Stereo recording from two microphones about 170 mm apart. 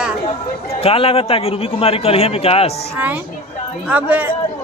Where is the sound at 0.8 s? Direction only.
35° left (ahead or behind).